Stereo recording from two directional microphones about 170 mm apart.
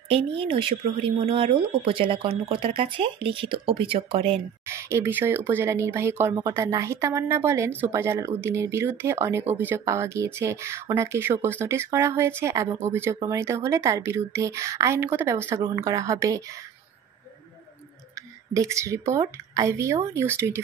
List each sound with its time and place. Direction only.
0.3 s speech: 35° right (ahead or behind)
4.6 s speech: 15° right (ahead or behind)
18.5 s speech: 20° right (ahead or behind)